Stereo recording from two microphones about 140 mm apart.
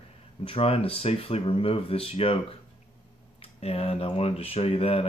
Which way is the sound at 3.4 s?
45° left (ahead or behind).